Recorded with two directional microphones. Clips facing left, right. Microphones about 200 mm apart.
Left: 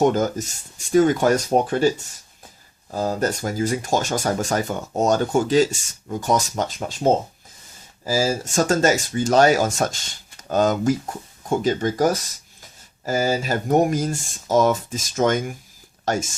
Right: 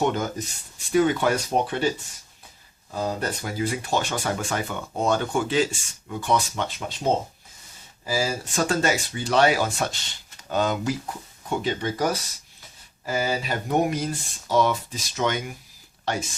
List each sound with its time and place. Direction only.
0.0 s speech: 40° left (ahead or behind)
2.9 s speech: 40° left (ahead or behind)